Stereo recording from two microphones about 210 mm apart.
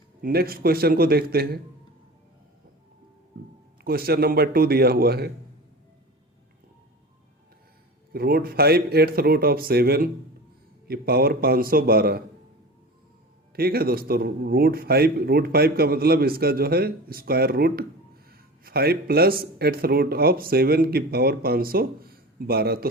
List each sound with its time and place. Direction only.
0.2 s a man's voice: 45° right (ahead or behind)
3.8 s a man's voice: 45° right (ahead or behind)
8.1 s a man's voice: 45° right (ahead or behind)
13.6 s a man's voice: 45° right (ahead or behind)